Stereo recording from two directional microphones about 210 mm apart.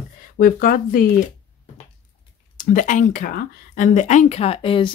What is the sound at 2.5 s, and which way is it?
Speech, 40° left (ahead or behind).